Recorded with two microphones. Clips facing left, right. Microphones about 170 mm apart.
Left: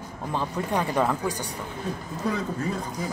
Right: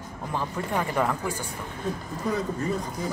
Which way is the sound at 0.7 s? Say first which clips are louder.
Left 2 dB; 15° left (ahead or behind).